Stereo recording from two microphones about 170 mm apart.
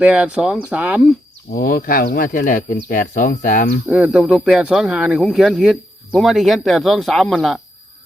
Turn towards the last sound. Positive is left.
turn(degrees=0)  # may be behind; listen again after turning